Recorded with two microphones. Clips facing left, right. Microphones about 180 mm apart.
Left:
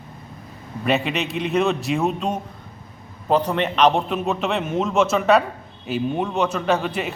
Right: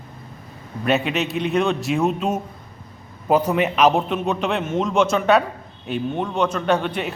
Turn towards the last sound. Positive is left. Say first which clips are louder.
# right 1 dB
turn(degrees=0)  # may be behind; listen again after turning